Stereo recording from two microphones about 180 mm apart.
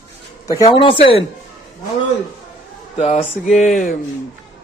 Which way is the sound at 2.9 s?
40° left (ahead or behind).